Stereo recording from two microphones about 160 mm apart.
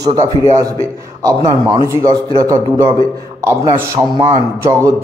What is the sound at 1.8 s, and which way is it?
A man's voice, 20° right (ahead or behind).